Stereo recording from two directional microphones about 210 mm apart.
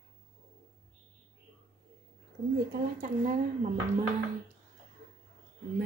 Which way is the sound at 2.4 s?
50° right (ahead or behind).